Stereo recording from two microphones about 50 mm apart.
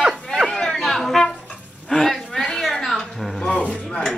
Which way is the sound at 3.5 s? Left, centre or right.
Left.